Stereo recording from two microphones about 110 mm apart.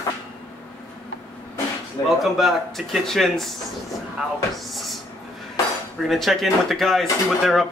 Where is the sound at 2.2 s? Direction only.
Centre (ahead or behind).